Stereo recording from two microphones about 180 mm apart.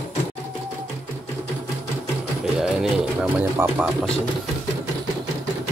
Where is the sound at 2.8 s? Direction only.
5° right (ahead or behind).